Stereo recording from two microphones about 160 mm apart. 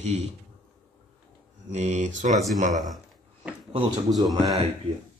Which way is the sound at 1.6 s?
45° right (ahead or behind).